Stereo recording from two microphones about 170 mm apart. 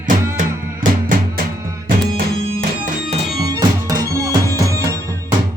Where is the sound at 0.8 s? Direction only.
50° right (ahead or behind).